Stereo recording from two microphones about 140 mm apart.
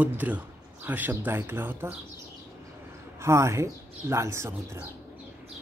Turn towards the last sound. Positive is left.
turn(degrees=-20)  # may be behind; listen again after turning